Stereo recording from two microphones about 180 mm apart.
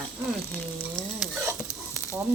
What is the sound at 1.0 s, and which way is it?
Stir, centre (ahead or behind).